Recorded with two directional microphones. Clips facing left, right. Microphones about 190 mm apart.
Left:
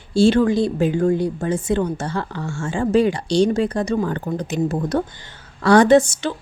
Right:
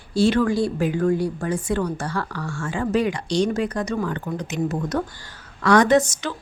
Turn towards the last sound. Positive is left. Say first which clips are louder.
# left 4 dB
turn(degrees=30)  # may be behind; listen again after turning